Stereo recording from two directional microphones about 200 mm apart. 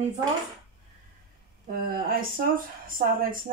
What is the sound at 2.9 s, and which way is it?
Speech, 45° right (ahead or behind).